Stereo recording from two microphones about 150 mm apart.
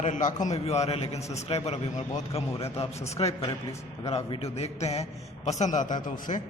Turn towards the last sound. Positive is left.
turn(degrees=60)  # may be behind; listen again after turning